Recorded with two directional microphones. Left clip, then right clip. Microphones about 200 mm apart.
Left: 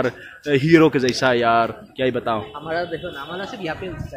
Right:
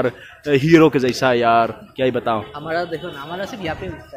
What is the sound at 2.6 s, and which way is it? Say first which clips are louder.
Speech: right 2 dB; 45° right (ahead or behind).